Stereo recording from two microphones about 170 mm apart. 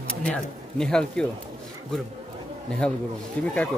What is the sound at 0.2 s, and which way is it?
Speech, 5° left (ahead or behind).